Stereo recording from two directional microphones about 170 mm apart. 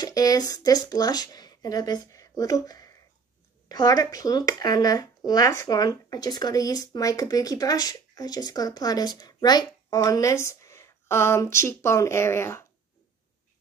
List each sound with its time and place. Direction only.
0.0 s speech: 20° left (ahead or behind)